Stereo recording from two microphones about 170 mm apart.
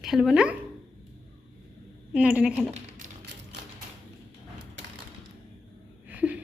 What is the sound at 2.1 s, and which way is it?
Speech, 5° right (ahead or behind).